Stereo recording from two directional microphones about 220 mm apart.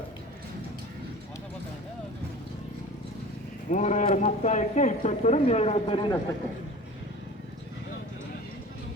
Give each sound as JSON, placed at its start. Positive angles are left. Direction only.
{"t": 3.7, "sound": "speech", "side_deg": 35}